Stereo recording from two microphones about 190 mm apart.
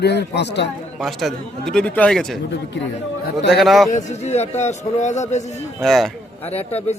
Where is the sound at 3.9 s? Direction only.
35° left (ahead or behind).